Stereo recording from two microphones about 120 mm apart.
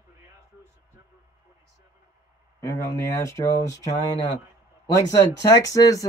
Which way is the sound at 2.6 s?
25° left (ahead or behind).